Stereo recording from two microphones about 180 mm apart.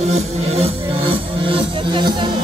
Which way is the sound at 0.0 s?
35° right (ahead or behind).